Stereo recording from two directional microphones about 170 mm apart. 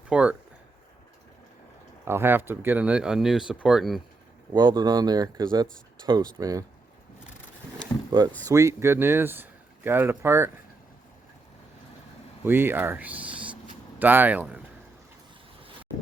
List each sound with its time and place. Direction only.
0.1 s speech: 5° right (ahead or behind)
2.0 s speech: 15° right (ahead or behind)
4.5 s speech: 25° right (ahead or behind)
8.4 s speech: 20° right (ahead or behind)
12.5 s speech: 10° right (ahead or behind)